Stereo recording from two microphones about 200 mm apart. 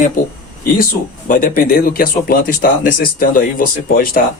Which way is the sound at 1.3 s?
45° left (ahead or behind).